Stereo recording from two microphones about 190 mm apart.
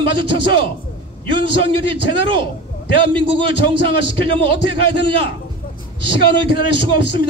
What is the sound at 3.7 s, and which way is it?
A man's voice, 25° right (ahead or behind).